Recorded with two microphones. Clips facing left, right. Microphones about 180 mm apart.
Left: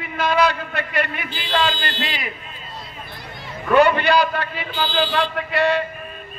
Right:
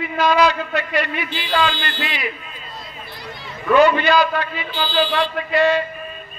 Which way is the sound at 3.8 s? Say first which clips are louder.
Right 1 dB; 60° left (ahead or behind).